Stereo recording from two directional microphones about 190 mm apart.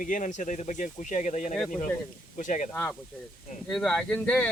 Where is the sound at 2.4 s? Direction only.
40° left (ahead or behind).